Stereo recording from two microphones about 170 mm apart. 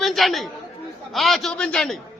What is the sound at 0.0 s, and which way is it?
A man's voice, centre (ahead or behind).